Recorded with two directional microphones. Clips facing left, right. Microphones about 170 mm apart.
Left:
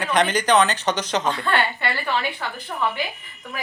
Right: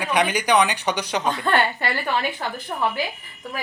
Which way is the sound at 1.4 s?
40° right (ahead or behind).